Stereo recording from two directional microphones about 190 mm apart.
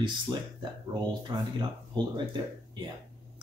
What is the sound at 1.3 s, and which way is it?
Speech, 20° right (ahead or behind).